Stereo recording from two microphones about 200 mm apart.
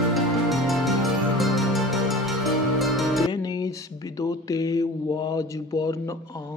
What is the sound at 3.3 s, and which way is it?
Mantra, 20° left (ahead or behind).